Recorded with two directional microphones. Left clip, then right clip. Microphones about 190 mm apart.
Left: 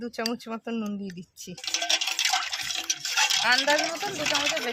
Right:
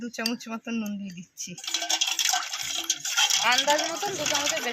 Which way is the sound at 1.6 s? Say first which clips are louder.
Left 1 dB; 20° left (ahead or behind).